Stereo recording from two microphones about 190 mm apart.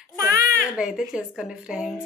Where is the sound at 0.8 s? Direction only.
5° right (ahead or behind).